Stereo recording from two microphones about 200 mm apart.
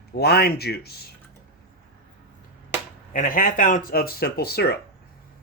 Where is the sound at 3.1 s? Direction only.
40° left (ahead or behind).